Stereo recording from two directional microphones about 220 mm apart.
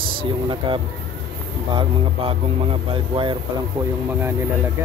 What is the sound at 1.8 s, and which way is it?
Speech, 25° right (ahead or behind).